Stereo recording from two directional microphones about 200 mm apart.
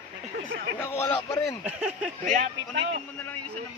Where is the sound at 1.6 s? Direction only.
5° right (ahead or behind).